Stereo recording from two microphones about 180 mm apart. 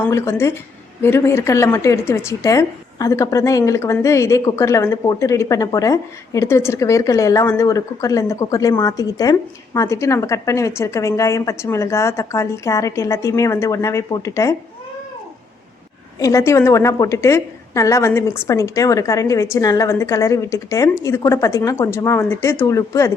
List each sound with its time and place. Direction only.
0.0 s a woman's voice: 15° left (ahead or behind)
16.1 s a woman's voice: 15° left (ahead or behind)